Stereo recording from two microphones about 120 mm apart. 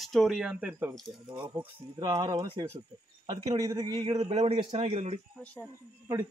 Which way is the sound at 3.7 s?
40° right (ahead or behind).